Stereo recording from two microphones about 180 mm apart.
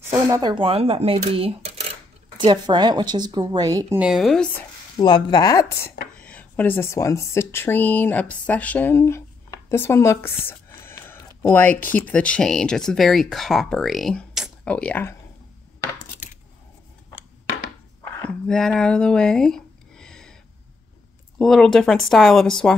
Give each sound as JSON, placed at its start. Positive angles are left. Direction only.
{"t": 0.3, "sound": "a woman's voice", "side_deg": -25}
{"t": 4.0, "sound": "speech", "side_deg": 0}
{"t": 4.9, "sound": "speech", "side_deg": 25}
{"t": 6.2, "sound": "a woman's voice", "side_deg": 10}
{"t": 18.5, "sound": "speech", "side_deg": 5}
{"t": 21.4, "sound": "speech", "side_deg": 0}